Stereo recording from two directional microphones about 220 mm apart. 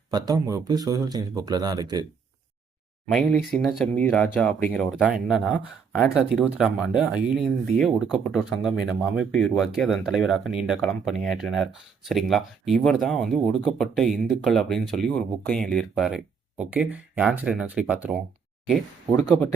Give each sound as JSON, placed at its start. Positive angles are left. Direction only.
{"t": 0.1, "sound": "speech", "side_deg": -15}
{"t": 3.1, "sound": "speech", "side_deg": 0}